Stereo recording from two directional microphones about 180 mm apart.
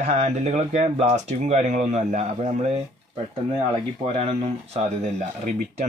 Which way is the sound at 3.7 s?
30° right (ahead or behind).